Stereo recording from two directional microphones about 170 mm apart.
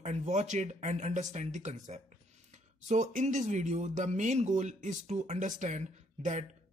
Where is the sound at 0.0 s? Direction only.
45° right (ahead or behind).